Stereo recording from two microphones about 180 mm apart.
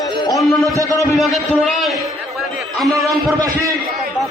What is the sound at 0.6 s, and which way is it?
Speech, 20° right (ahead or behind).